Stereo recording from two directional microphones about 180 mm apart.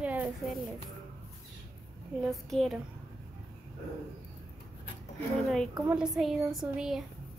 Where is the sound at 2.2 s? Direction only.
Centre (ahead or behind).